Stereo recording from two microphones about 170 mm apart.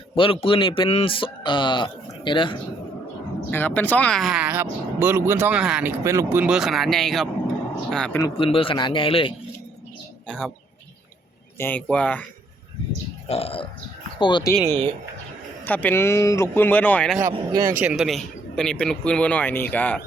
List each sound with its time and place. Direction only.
0.2 s a man's voice: 30° left (ahead or behind)
3.5 s speech: 10° left (ahead or behind)
8.4 s a man's voice: 30° left (ahead or behind)
10.2 s speech: 5° left (ahead or behind)
11.5 s speech: 10° left (ahead or behind)
13.2 s a man's voice: 35° left (ahead or behind)
15.6 s speech: 10° left (ahead or behind)
17.2 s speech: 15° right (ahead or behind); by 20.0 s 10° left (ahead or behind)